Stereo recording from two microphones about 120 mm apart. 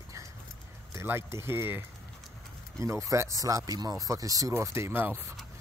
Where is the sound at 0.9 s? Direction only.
20° right (ahead or behind).